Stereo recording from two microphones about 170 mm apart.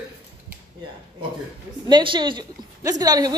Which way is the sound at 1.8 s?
30° right (ahead or behind).